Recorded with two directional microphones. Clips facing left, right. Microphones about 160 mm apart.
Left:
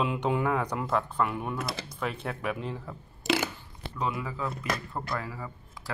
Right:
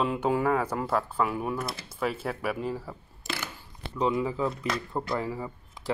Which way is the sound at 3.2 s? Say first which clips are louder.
Left 9 dB; 90° left.